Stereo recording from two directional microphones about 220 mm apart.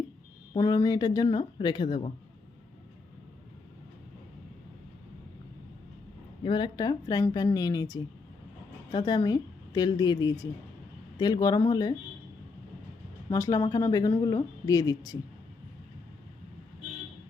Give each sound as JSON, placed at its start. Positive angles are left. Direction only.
{"t": 0.5, "sound": "speech", "side_deg": 15}
{"t": 6.4, "sound": "a woman's voice", "side_deg": 20}
{"t": 13.3, "sound": "speech", "side_deg": 15}